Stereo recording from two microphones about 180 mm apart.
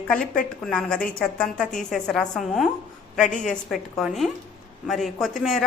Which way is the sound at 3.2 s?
45° left (ahead or behind).